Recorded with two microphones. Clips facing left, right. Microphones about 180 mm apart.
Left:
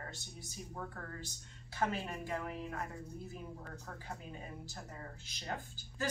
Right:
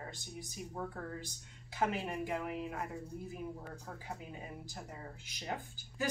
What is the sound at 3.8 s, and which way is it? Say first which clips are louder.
A woman's voice: right 1 dB; 10° right (ahead or behind).